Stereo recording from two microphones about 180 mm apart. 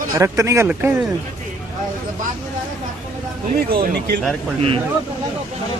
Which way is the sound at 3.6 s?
60° right (ahead or behind).